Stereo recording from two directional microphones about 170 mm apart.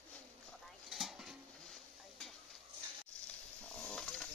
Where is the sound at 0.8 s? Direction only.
Centre (ahead or behind).